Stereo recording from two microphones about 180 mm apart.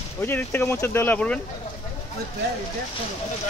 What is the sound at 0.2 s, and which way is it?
Speech, 10° left (ahead or behind).